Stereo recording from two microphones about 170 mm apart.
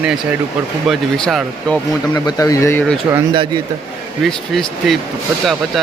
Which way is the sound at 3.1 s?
25° right (ahead or behind).